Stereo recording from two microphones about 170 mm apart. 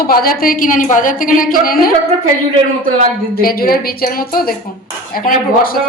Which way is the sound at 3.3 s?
60° left (ahead or behind).